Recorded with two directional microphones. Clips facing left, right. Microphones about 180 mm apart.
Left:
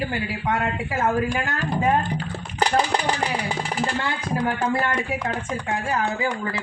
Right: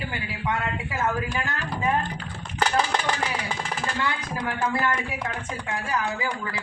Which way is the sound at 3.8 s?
30° left (ahead or behind).